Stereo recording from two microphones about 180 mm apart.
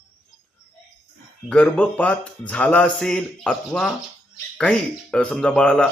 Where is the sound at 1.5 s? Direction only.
5° left (ahead or behind).